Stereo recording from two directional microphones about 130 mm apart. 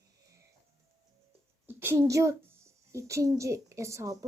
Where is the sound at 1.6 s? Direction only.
15° right (ahead or behind).